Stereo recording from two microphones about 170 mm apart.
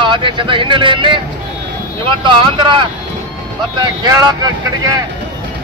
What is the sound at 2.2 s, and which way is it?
Speech, 30° right (ahead or behind).